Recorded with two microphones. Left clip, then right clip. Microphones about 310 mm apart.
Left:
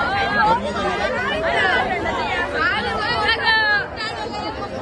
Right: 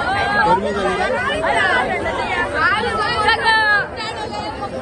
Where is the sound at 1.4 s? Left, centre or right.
Centre.